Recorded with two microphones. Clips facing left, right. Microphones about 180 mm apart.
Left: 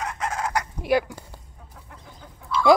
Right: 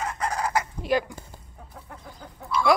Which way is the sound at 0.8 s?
10° left (ahead or behind).